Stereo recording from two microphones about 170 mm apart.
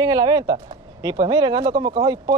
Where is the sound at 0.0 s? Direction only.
25° right (ahead or behind).